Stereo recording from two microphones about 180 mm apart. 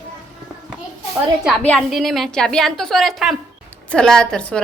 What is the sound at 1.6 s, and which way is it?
A woman's voice, 5° left (ahead or behind).